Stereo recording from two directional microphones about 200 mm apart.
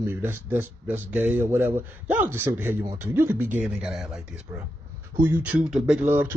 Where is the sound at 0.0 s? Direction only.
10° right (ahead or behind).